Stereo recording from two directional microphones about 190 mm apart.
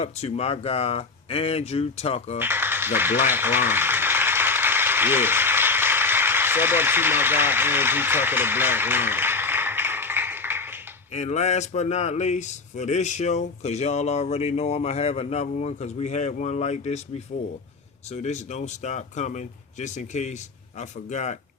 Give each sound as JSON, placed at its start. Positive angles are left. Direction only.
{"t": 0.0, "sound": "speech", "side_deg": 35}
{"t": 2.4, "sound": "a sound", "side_deg": -10}
{"t": 11.1, "sound": "speech", "side_deg": 35}
{"t": 18.1, "sound": "speech", "side_deg": 35}